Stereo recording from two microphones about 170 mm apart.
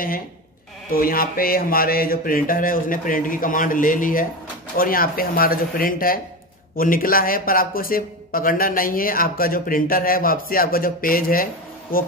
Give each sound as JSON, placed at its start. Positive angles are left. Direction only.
{"t": 0.8, "sound": "a man's voice", "side_deg": 60}